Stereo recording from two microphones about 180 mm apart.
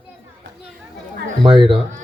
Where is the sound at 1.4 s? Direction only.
30° right (ahead or behind).